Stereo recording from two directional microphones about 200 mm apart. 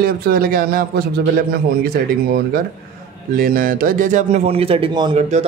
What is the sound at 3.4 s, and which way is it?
A man's voice, 45° right (ahead or behind).